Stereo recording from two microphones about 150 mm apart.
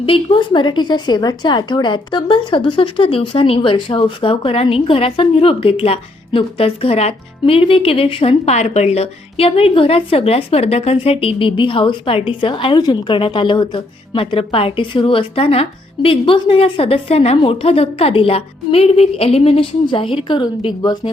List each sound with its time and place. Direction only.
0.0 s a woman's voice: 35° left (ahead or behind)